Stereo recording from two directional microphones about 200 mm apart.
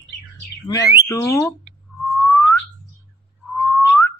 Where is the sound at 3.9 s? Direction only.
10° left (ahead or behind).